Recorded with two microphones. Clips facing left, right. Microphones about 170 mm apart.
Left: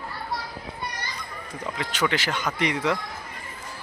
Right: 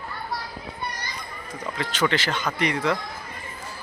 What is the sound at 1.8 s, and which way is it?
Speech, 15° left (ahead or behind).